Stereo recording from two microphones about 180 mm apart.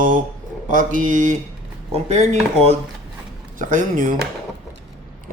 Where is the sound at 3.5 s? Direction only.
45° right (ahead or behind).